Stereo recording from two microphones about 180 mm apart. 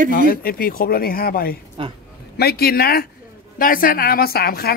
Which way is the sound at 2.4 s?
60° left (ahead or behind).